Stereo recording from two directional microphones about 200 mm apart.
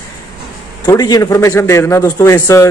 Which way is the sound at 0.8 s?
15° left (ahead or behind).